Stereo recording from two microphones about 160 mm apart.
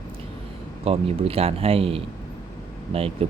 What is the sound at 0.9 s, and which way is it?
Speech, 35° right (ahead or behind).